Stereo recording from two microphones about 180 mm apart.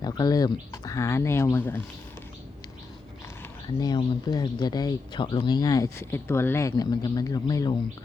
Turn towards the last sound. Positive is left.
turn(degrees=20)  # may be behind; listen again after turning